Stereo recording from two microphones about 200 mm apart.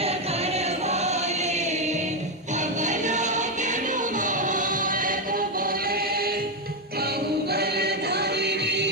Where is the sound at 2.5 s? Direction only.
35° right (ahead or behind); by 8.9 s 55° right (ahead or behind).